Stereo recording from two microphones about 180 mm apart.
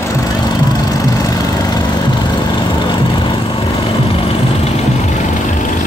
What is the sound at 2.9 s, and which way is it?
Vehicle, 25° left (ahead or behind).